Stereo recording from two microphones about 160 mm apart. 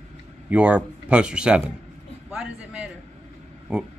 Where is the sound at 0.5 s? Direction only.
10° right (ahead or behind).